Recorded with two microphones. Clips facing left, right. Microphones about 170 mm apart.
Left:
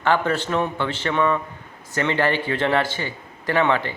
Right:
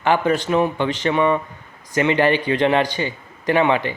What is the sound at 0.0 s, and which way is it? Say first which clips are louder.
A man's voice: right 3 dB; 15° right (ahead or behind).